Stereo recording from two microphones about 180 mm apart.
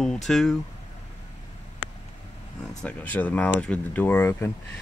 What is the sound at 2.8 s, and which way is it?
Speech, 10° left (ahead or behind).